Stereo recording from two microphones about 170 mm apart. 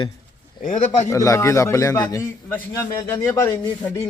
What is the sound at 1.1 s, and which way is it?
Speech, 20° left (ahead or behind).